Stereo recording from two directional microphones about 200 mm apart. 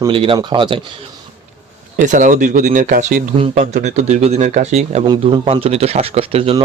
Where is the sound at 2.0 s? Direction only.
40° right (ahead or behind).